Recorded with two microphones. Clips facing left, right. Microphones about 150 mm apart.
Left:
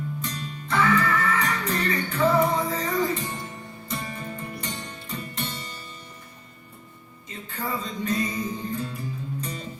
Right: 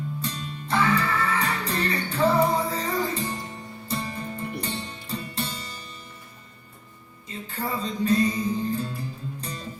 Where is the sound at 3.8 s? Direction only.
30° right (ahead or behind).